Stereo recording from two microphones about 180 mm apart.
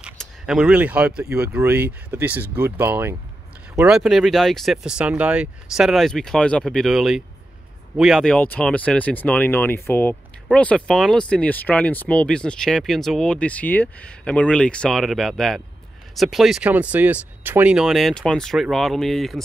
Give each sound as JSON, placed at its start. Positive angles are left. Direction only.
{"t": 0.0, "sound": "speech", "side_deg": -5}